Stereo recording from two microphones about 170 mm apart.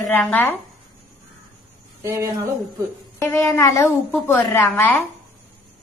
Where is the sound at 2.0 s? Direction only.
20° right (ahead or behind).